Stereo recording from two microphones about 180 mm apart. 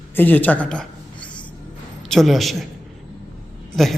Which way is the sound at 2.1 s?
Centre (ahead or behind).